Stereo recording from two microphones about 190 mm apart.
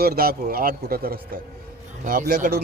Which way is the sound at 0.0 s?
55° right (ahead or behind).